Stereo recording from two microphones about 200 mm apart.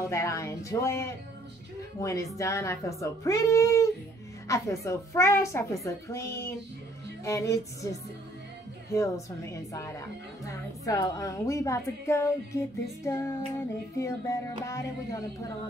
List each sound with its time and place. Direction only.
0.0 s a woman's voice: 15° left (ahead or behind)
7.2 s a woman's voice: 15° left (ahead or behind)
8.9 s a woman's voice: 15° left (ahead or behind)